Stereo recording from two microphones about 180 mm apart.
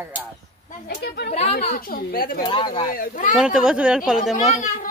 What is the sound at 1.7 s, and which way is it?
Speech, 55° left (ahead or behind).